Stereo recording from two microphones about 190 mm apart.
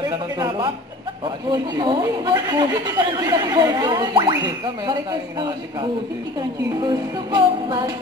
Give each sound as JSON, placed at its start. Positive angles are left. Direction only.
{"t": 1.5, "sound": "speech", "side_deg": -25}
{"t": 6.8, "sound": "speech", "side_deg": -25}